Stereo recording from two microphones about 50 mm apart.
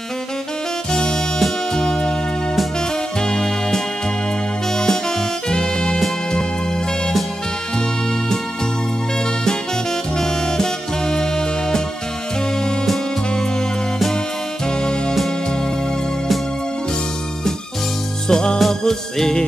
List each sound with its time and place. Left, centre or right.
1.4 s music: centre
5.5 s music: centre
10.1 s music: centre
18.3 s music: centre